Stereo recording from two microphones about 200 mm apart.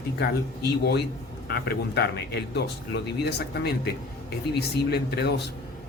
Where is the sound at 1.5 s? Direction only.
55° left (ahead or behind).